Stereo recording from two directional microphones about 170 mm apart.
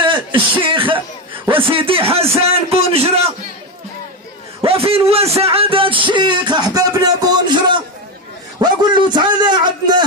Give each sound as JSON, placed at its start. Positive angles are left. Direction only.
{"t": 0.0, "sound": "a sound", "side_deg": -25}
{"t": 1.7, "sound": "a man's voice", "side_deg": -30}
{"t": 4.6, "sound": "music", "side_deg": -35}